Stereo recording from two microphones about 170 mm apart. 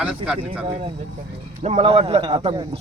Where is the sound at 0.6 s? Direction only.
35° right (ahead or behind).